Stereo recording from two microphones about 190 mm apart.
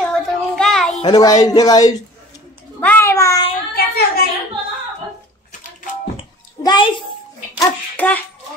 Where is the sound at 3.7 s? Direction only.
55° left (ahead or behind).